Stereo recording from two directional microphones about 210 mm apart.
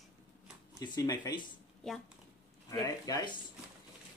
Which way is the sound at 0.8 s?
20° left (ahead or behind).